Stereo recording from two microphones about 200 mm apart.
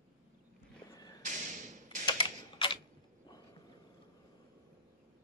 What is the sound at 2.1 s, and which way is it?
Typewriter, 25° left (ahead or behind).